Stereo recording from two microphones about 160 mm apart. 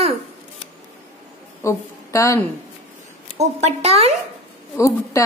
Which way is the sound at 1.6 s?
20° left (ahead or behind).